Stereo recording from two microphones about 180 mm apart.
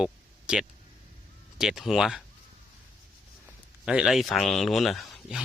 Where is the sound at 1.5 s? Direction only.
5° right (ahead or behind).